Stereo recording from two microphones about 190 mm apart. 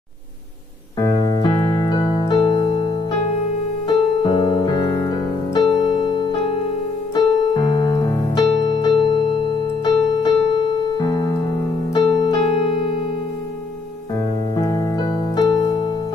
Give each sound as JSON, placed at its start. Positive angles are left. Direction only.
{"t": 0.9, "sound": "piano", "side_deg": 20}
{"t": 3.8, "sound": "piano", "side_deg": 25}
{"t": 7.2, "sound": "keyboard", "side_deg": 25}
{"t": 8.6, "sound": "electric piano", "side_deg": 25}
{"t": 10.2, "sound": "music", "side_deg": 25}
{"t": 11.9, "sound": "keyboard", "side_deg": 25}
{"t": 14.1, "sound": "keyboard", "side_deg": 20}